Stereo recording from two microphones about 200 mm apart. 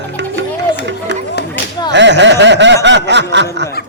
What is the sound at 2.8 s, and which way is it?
Snicker, 60° right (ahead or behind).